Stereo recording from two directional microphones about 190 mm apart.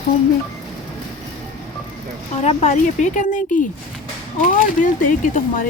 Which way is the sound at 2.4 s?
35° left (ahead or behind).